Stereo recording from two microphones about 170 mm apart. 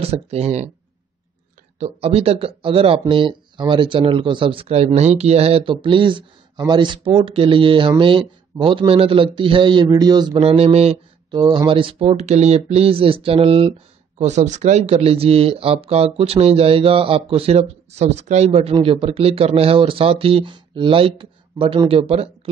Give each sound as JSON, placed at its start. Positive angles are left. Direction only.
{"t": 0.0, "sound": "speech", "side_deg": -35}
{"t": 1.8, "sound": "speech", "side_deg": -35}
{"t": 11.3, "sound": "speech", "side_deg": -25}